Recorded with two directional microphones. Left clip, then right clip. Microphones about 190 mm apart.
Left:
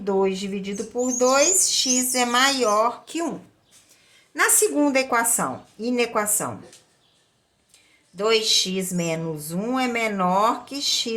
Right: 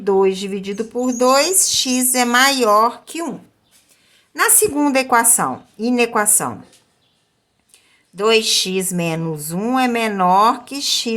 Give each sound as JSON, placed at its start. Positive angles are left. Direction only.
{"t": 0.0, "sound": "speech", "side_deg": -40}
{"t": 4.4, "sound": "speech", "side_deg": -25}
{"t": 8.1, "sound": "speech", "side_deg": -35}